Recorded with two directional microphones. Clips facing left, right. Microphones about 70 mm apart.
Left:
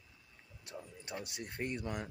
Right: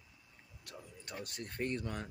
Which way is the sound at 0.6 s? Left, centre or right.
Left.